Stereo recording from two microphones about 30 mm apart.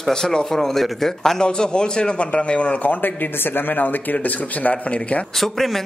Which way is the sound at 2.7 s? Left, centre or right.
Left.